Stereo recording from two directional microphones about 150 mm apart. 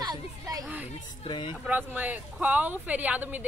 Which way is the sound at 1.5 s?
10° right (ahead or behind).